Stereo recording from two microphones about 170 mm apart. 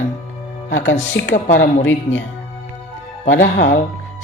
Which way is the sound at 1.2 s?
90° left.